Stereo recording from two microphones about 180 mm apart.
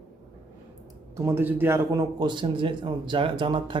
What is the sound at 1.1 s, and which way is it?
Speech, 15° right (ahead or behind).